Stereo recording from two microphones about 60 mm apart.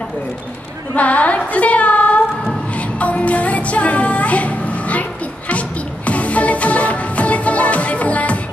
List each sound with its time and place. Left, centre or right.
0.9 s female singing: left
3.0 s music: left